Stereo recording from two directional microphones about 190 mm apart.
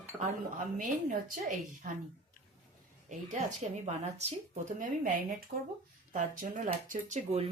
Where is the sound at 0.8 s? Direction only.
45° right (ahead or behind).